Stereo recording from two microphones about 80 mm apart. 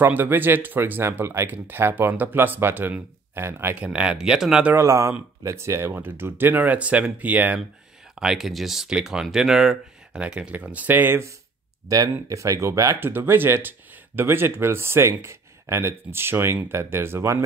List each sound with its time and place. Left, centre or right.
0.0 s speech: right
3.7 s speech: centre
4.7 s speech: right
8.2 s speech: centre; by 11.3 s right
11.9 s speech: right
13.0 s speech: right